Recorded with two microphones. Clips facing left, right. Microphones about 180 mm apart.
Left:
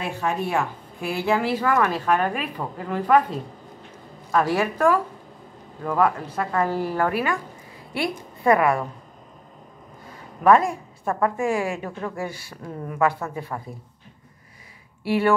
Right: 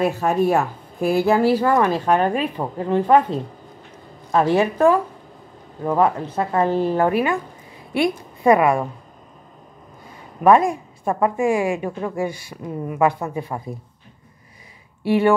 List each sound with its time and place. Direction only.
0.0 s speech: 40° right (ahead or behind); by 3.3 s 25° right (ahead or behind)
4.3 s a woman's voice: 25° right (ahead or behind)
10.4 s a woman's voice: 20° right (ahead or behind)
15.0 s a woman's voice: 20° right (ahead or behind)